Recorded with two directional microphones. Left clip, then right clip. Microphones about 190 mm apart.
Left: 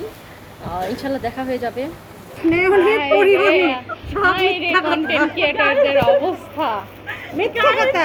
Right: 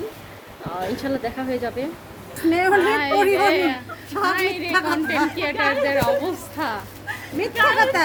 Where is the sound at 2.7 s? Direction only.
35° right (ahead or behind).